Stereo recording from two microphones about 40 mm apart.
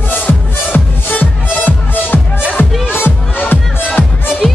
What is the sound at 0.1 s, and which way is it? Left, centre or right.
Music, left.